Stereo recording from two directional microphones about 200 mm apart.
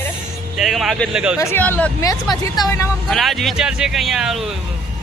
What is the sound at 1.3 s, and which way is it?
Speech, 10° left (ahead or behind).